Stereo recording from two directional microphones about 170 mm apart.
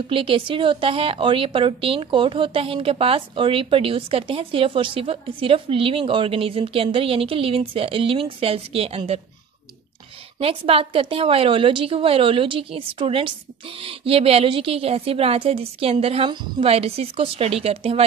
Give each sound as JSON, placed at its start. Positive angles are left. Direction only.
{"t": 0.1, "sound": "a woman's voice", "side_deg": -30}
{"t": 10.4, "sound": "a woman's voice", "side_deg": -35}